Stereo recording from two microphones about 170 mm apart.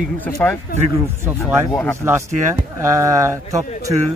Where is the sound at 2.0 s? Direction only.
15° right (ahead or behind).